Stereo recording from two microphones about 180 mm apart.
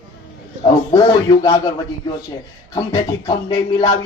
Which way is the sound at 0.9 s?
20° left (ahead or behind).